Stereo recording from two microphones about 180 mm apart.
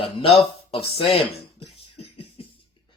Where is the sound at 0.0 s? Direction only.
30° left (ahead or behind).